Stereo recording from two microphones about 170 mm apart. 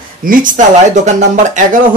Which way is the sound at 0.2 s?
50° right (ahead or behind).